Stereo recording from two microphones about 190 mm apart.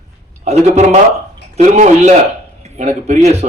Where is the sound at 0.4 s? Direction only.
35° right (ahead or behind).